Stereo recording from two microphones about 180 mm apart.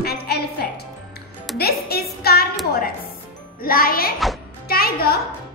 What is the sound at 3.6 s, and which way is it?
A woman's voice, 55° left (ahead or behind).